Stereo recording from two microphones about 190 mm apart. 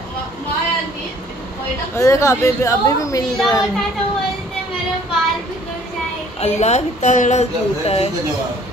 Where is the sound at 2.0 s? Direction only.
15° left (ahead or behind).